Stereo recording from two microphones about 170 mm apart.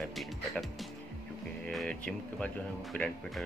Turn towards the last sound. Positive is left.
turn(degrees=5)  # may be behind; listen again after turning